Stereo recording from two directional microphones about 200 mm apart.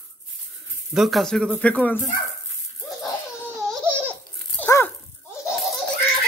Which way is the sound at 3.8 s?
10° right (ahead or behind).